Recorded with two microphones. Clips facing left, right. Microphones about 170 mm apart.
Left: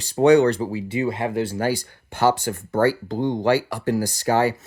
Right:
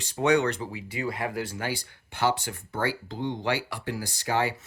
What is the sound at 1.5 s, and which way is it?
Speech, 40° left (ahead or behind).